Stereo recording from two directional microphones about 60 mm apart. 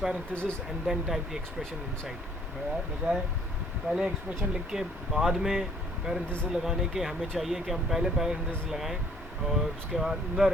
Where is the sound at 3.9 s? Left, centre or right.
Centre.